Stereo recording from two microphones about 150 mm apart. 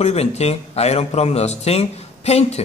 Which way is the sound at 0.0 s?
45° left (ahead or behind).